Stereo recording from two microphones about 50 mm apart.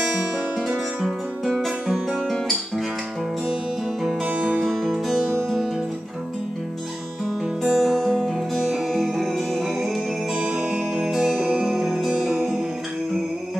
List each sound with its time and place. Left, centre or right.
0.6 s music: centre
1.5 s guitar: centre
4.3 s music: right
7.6 s music: centre
9.8 s music: right
11.1 s music: centre
11.3 s music: right
11.6 s music: centre